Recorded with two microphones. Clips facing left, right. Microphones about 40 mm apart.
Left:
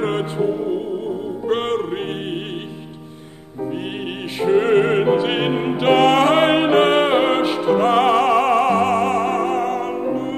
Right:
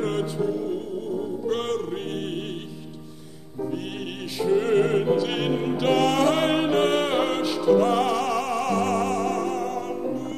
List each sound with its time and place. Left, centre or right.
0.0 s music: left
4.4 s music: left